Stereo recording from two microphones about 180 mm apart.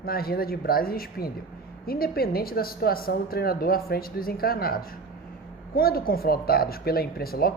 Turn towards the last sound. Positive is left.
turn(degrees=55)  # may be behind; listen again after turning